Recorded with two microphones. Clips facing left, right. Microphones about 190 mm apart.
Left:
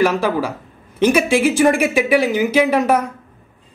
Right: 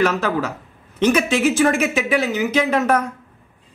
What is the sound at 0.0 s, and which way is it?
Speech, 10° left (ahead or behind).